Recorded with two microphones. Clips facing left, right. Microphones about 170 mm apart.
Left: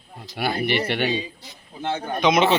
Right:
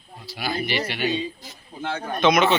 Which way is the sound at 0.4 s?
60° left (ahead or behind).